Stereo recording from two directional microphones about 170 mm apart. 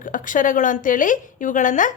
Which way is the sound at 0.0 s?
50° left (ahead or behind).